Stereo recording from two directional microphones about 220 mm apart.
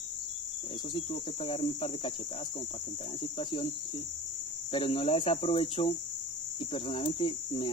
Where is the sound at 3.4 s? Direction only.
20° left (ahead or behind).